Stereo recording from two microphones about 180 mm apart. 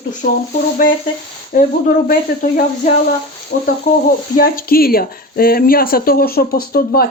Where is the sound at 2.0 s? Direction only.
50° left (ahead or behind).